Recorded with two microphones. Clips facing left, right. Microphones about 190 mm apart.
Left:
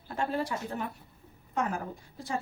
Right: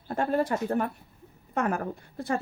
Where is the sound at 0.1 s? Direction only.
50° right (ahead or behind).